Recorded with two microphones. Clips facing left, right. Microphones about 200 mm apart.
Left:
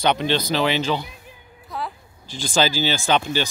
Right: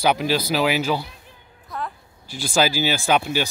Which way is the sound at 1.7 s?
5° left (ahead or behind).